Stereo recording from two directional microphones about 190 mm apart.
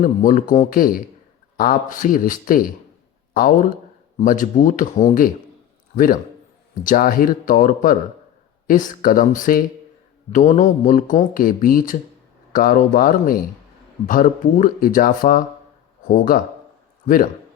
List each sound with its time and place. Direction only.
0.0 s speech: 45° left (ahead or behind)
6.8 s speech: 45° left (ahead or behind)